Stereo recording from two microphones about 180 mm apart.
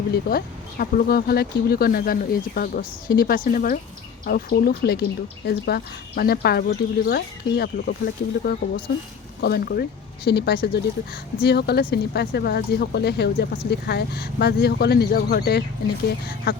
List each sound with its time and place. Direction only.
0.3 s speech: 55° left (ahead or behind)